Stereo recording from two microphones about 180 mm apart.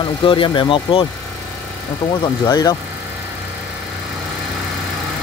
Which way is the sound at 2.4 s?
20° left (ahead or behind).